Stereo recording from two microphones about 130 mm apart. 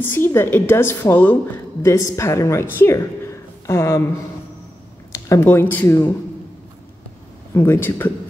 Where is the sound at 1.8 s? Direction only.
25° left (ahead or behind).